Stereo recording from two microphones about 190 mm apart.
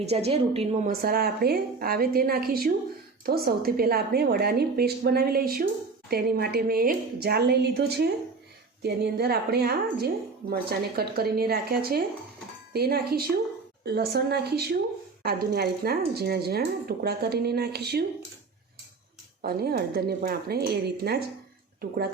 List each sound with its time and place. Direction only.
0.3 s a woman's voice: 35° right (ahead or behind)
0.9 s a woman's voice: 55° right (ahead or behind)
19.4 s speech: 50° right (ahead or behind)